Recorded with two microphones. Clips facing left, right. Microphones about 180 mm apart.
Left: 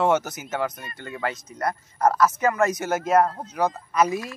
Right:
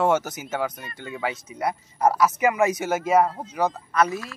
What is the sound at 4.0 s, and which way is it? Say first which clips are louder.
Speech: left 1 dB; 15° left (ahead or behind).